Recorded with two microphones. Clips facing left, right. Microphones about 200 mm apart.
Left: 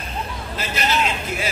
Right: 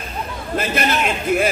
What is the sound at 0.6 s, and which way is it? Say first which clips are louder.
Speech: right 3 dB; 55° right (ahead or behind).